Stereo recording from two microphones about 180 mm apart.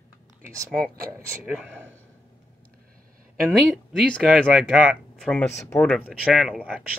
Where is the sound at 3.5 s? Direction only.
5° left (ahead or behind).